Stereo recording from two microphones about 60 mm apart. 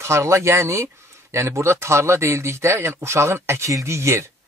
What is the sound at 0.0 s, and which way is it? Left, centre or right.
Speech, right.